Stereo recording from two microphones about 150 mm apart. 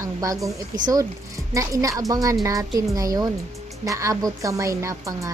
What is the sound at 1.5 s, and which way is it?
Speech, 20° right (ahead or behind).